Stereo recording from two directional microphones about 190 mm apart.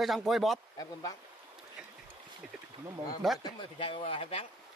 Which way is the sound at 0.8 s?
20° left (ahead or behind).